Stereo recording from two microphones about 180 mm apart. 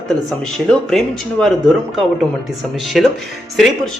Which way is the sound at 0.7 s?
Centre (ahead or behind).